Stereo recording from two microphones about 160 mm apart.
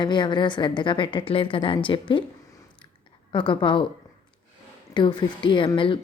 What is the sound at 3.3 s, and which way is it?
Speech, 30° left (ahead or behind).